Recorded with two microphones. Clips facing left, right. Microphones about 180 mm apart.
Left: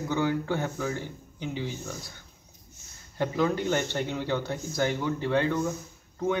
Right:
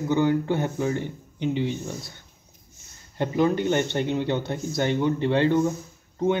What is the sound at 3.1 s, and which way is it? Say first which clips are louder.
A man's voice: right 4 dB; 20° right (ahead or behind).